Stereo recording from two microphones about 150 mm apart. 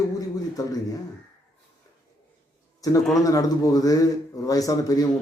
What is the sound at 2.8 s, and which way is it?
Speech, 20° left (ahead or behind).